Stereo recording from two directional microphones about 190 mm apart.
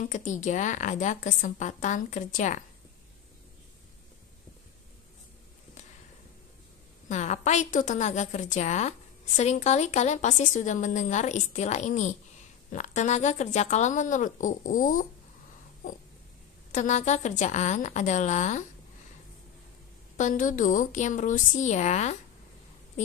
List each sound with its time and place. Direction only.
0.1 s a woman's voice: 40° left (ahead or behind)
7.1 s a woman's voice: 40° left (ahead or behind)
16.7 s a woman's voice: 40° left (ahead or behind)
20.2 s a woman's voice: 40° left (ahead or behind)